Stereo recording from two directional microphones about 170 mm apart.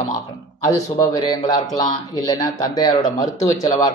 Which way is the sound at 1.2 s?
20° left (ahead or behind).